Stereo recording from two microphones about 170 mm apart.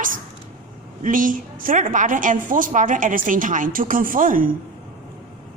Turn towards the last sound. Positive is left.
turn(degrees=-55)  # may be behind; listen again after turning